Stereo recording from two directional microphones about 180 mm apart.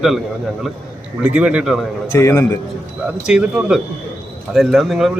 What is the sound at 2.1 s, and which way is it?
Speech, 15° left (ahead or behind).